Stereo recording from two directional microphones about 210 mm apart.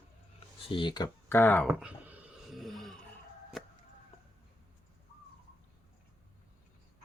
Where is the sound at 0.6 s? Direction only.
25° left (ahead or behind); by 3.0 s centre (ahead or behind).